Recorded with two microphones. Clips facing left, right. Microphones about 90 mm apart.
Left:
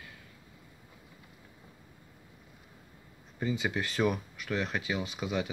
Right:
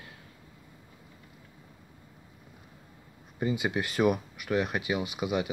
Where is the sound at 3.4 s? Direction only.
10° right (ahead or behind).